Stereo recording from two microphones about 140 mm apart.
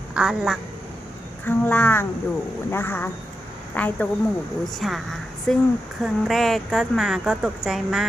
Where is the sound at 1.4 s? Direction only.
15° left (ahead or behind).